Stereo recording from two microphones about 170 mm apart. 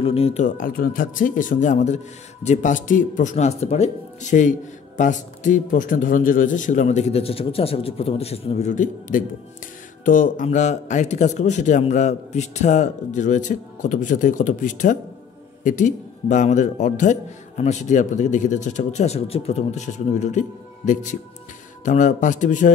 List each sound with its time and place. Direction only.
0.0 s speech: 35° left (ahead or behind)